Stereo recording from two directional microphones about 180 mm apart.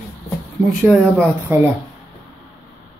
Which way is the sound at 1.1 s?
10° right (ahead or behind).